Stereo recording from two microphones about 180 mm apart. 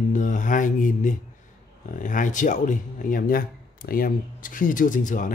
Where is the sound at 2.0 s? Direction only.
45° left (ahead or behind).